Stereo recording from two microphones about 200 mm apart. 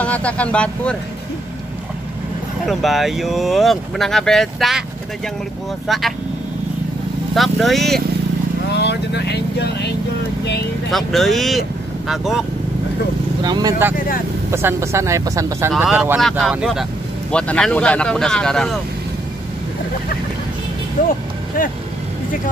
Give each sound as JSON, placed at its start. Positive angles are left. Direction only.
{"t": 0.0, "sound": "speech", "side_deg": 5}
{"t": 2.6, "sound": "speech", "side_deg": 0}
{"t": 5.9, "sound": "speech", "side_deg": 0}
{"t": 7.3, "sound": "speech", "side_deg": 0}
{"t": 8.6, "sound": "speech", "side_deg": 55}
{"t": 10.9, "sound": "speech", "side_deg": 0}
{"t": 13.4, "sound": "speech", "side_deg": -20}
{"t": 15.7, "sound": "speech", "side_deg": -5}
{"t": 21.0, "sound": "speech", "side_deg": 45}